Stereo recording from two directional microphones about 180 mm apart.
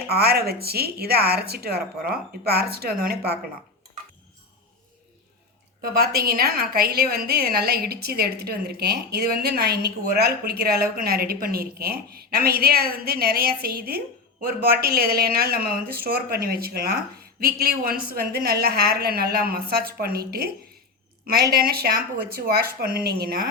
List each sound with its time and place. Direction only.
0.1 s a woman's voice: 60° right (ahead or behind)
5.8 s a woman's voice: 60° right (ahead or behind)